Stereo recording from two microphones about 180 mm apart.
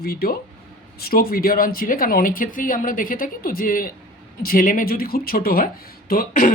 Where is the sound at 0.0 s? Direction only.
60° left (ahead or behind).